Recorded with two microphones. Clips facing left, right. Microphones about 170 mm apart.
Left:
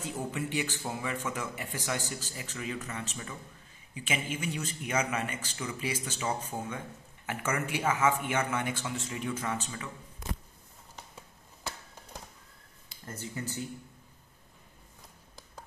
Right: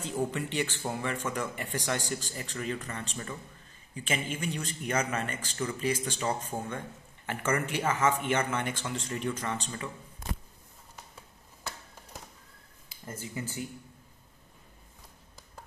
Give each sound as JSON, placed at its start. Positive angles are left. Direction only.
{"t": 0.0, "sound": "a man's voice", "side_deg": 10}
{"t": 13.0, "sound": "speech", "side_deg": -10}